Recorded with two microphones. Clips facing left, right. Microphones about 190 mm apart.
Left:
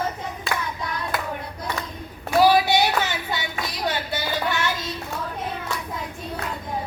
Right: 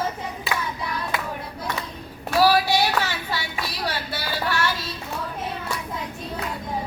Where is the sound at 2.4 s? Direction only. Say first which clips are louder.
Left 1 dB; 20° left (ahead or behind).